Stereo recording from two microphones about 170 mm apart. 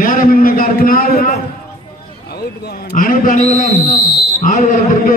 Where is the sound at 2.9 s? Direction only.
50° left (ahead or behind).